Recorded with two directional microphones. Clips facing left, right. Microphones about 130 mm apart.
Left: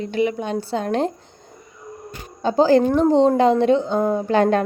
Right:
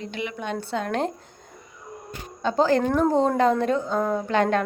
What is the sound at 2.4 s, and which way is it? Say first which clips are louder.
A woman's voice: left 5 dB; 35° left (ahead or behind).